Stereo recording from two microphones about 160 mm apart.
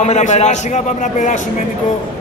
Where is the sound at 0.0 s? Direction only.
45° left (ahead or behind).